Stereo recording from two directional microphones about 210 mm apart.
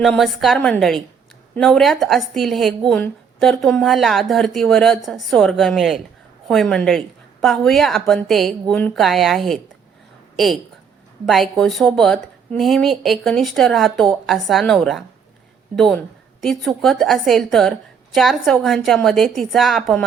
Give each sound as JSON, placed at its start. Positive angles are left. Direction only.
{"t": 0.0, "sound": "a woman's voice", "side_deg": 0}